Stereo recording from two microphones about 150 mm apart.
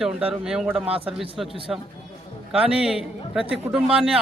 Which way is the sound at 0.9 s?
40° right (ahead or behind).